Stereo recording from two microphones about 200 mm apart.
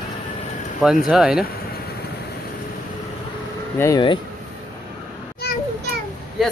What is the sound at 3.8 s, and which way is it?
Speech, 20° left (ahead or behind).